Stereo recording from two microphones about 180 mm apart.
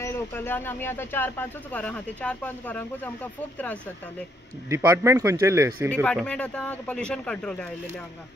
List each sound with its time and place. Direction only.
0.0 s speech: 15° left (ahead or behind)
4.6 s speech: 15° right (ahead or behind)
6.0 s speech: 5° left (ahead or behind)